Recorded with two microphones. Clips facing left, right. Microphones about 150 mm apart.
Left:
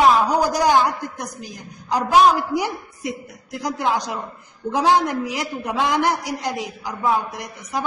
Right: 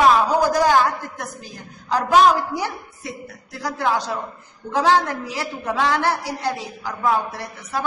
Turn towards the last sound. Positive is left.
turn(degrees=15)  # may be behind; listen again after turning